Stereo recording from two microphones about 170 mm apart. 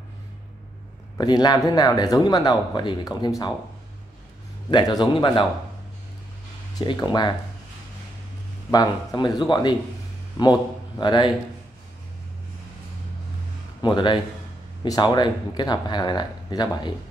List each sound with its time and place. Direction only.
1.1 s speech: 25° left (ahead or behind)
4.6 s speech: 25° left (ahead or behind)
6.8 s speech: 25° left (ahead or behind)
8.7 s a man's voice: 25° left (ahead or behind)
13.8 s speech: 25° left (ahead or behind)